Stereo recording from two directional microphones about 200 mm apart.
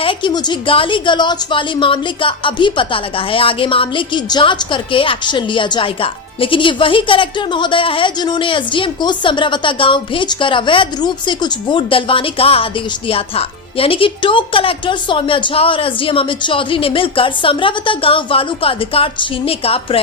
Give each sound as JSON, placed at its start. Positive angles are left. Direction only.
{"t": 0.0, "sound": "a woman's voice", "side_deg": 25}